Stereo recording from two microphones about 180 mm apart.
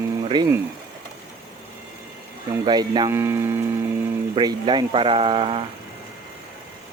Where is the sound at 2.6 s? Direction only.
25° right (ahead or behind).